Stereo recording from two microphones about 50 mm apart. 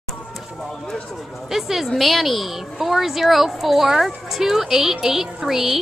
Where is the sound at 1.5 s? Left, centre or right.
Centre.